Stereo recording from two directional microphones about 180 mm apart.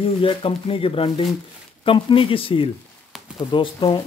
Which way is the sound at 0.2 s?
30° left (ahead or behind).